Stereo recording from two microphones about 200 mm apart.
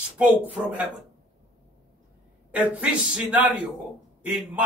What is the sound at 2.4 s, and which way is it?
A man's voice, 5° right (ahead or behind).